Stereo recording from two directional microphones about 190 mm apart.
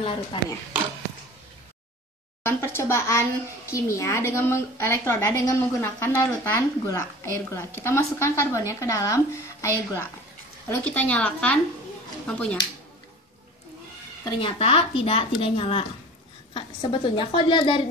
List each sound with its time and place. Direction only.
0.0 s a woman's voice: 25° left (ahead or behind)
2.4 s a child's voice: 10° left (ahead or behind)
14.4 s a woman's voice: 30° left (ahead or behind)
17.1 s a woman's voice: 25° left (ahead or behind)